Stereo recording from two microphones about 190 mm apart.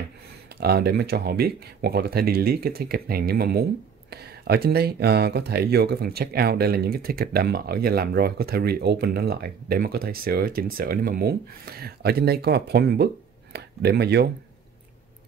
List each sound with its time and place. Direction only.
0.6 s speech: 55° right (ahead or behind)